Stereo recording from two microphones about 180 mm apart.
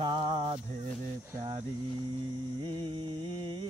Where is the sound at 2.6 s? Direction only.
25° right (ahead or behind).